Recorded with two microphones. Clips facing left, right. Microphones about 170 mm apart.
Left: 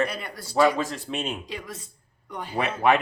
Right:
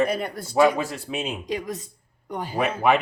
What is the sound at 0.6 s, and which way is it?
Speech, 10° right (ahead or behind).